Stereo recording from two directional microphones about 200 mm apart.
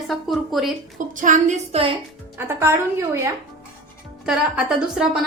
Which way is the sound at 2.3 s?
10° right (ahead or behind).